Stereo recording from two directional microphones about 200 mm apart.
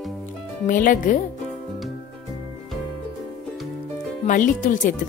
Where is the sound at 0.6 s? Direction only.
40° left (ahead or behind).